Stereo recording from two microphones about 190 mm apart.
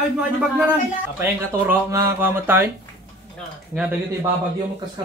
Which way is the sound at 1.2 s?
15° right (ahead or behind).